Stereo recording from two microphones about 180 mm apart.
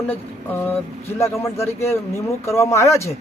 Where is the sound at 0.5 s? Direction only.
10° left (ahead or behind).